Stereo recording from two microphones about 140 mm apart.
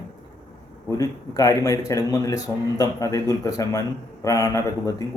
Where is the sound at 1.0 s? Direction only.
25° left (ahead or behind).